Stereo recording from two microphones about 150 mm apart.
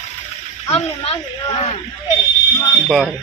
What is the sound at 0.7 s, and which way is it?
A woman's voice, 40° left (ahead or behind).